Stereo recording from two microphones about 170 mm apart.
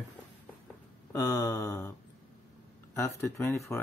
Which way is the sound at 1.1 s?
20° left (ahead or behind).